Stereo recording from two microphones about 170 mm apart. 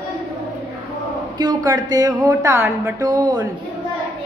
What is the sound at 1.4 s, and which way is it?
A woman's voice, 25° right (ahead or behind).